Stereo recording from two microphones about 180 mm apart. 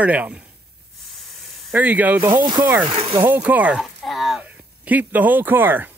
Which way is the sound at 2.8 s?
30° right (ahead or behind).